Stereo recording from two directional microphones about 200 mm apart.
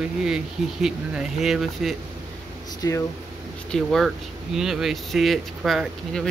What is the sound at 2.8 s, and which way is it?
Speech, 15° left (ahead or behind).